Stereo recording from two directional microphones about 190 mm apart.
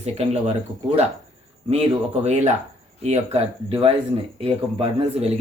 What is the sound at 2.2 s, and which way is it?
A man's voice, 35° right (ahead or behind).